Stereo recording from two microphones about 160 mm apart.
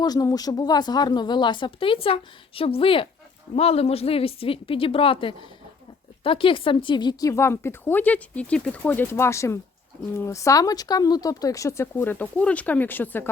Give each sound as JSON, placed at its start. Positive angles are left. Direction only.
{"t": 0.0, "sound": "a woman's voice", "side_deg": 25}